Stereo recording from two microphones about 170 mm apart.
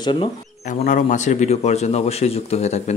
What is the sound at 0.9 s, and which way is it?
Speech, 45° left (ahead or behind).